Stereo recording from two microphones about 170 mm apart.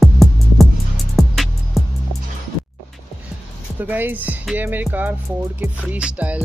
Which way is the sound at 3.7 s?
10° right (ahead or behind).